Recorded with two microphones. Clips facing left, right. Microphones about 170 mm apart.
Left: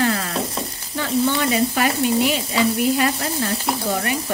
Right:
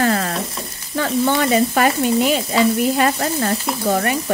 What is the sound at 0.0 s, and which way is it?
Sizzle, 50° right (ahead or behind).